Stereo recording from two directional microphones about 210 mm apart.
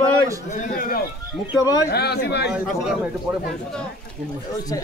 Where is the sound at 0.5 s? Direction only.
40° left (ahead or behind).